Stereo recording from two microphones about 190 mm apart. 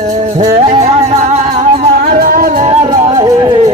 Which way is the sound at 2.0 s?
55° right (ahead or behind).